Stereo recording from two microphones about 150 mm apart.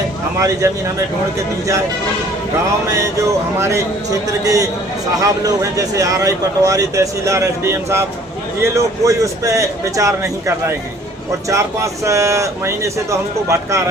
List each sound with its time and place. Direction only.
0.3 s a man's voice: 20° right (ahead or behind)
2.9 s a man's voice: 20° right (ahead or behind)